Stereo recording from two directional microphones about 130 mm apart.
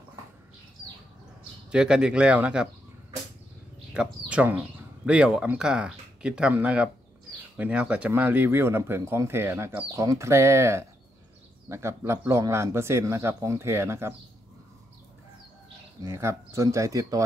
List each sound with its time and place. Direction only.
1.7 s speech: 5° right (ahead or behind)
3.9 s speech: 10° right (ahead or behind)
16.0 s speech: 20° right (ahead or behind)